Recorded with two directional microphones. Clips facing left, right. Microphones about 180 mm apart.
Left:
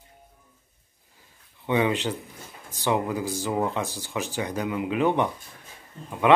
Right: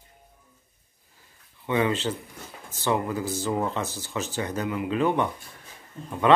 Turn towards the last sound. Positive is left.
turn(degrees=10)  # may be behind; listen again after turning